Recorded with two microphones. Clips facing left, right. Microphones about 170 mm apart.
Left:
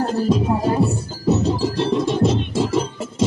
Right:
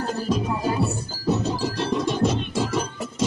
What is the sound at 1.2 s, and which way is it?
Music, 25° left (ahead or behind).